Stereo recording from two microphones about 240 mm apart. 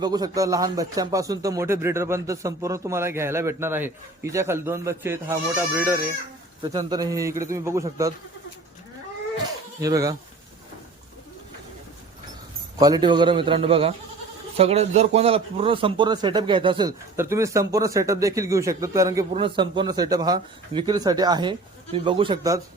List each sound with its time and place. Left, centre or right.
0.0 s speech: centre
9.8 s speech: centre
12.8 s a man's voice: centre